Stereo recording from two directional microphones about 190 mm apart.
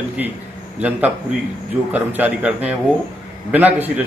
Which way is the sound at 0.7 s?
10° right (ahead or behind).